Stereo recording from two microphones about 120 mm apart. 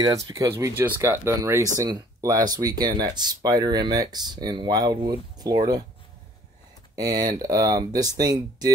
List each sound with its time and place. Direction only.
0.0 s speech: 30° right (ahead or behind)
7.0 s speech: 35° right (ahead or behind)